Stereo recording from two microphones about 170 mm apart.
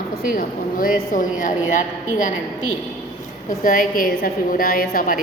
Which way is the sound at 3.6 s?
55° left (ahead or behind).